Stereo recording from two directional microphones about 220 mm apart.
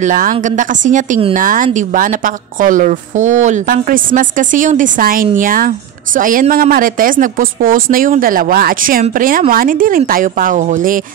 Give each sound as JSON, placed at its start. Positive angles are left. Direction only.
{"t": 0.0, "sound": "a woman's voice", "side_deg": -35}